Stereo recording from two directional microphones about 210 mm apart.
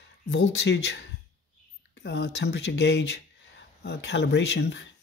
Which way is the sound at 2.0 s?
55° left (ahead or behind).